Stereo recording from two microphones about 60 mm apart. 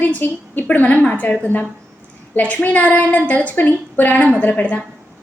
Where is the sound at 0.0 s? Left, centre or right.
Left.